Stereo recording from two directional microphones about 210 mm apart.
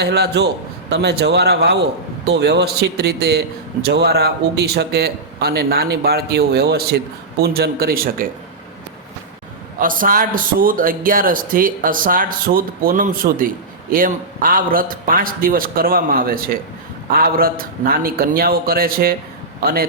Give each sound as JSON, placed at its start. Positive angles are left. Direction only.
{"t": 0.0, "sound": "a man's voice", "side_deg": -50}
{"t": 9.8, "sound": "a man's voice", "side_deg": -40}